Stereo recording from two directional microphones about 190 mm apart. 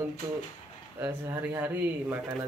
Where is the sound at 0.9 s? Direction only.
10° right (ahead or behind).